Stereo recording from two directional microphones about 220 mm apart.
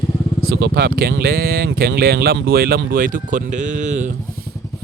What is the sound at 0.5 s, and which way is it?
Speech, 50° right (ahead or behind).